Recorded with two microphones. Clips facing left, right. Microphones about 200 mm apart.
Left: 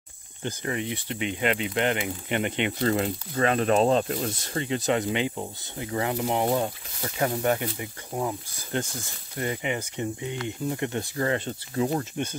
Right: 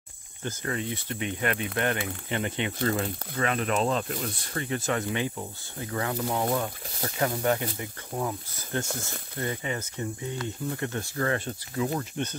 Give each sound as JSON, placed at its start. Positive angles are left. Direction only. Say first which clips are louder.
{"t": 0.4, "sound": "speech", "louder": "left 2 dB", "side_deg": 15}
{"t": 11.7, "sound": "speech", "louder": "left 3 dB", "side_deg": 35}